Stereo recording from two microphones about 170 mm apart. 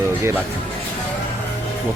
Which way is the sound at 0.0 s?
15° right (ahead or behind).